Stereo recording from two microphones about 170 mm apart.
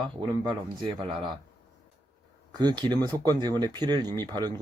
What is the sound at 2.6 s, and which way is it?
Speech, 25° right (ahead or behind).